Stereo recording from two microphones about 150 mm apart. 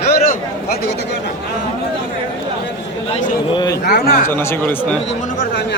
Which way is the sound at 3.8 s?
90° left.